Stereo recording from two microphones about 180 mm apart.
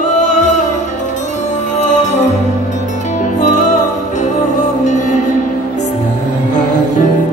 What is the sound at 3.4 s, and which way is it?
Music, 45° left (ahead or behind).